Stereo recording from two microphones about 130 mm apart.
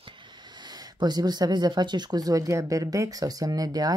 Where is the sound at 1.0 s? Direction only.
35° right (ahead or behind).